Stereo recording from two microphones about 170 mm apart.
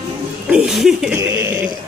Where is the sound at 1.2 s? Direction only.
15° right (ahead or behind).